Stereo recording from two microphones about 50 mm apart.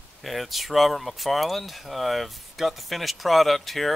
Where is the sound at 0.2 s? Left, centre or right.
Centre.